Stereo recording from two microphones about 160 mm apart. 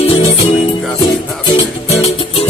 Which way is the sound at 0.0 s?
40° left (ahead or behind).